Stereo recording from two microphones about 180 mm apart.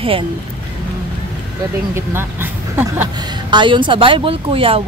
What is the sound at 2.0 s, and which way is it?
Speech, 15° right (ahead or behind).